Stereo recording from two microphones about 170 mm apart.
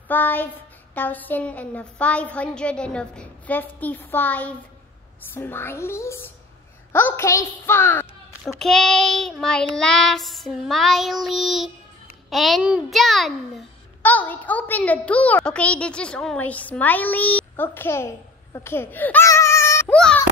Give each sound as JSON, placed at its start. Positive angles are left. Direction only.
{"t": 0.1, "sound": "a woman's voice", "side_deg": 10}
{"t": 8.5, "sound": "child singing", "side_deg": 0}
{"t": 12.3, "sound": "a child's voice", "side_deg": 0}